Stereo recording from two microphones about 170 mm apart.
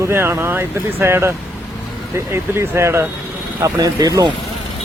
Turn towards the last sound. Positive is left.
turn(degrees=-25)  # may be behind; listen again after turning